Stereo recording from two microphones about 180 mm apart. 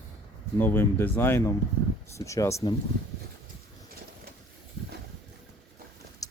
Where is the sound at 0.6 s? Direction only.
10° left (ahead or behind).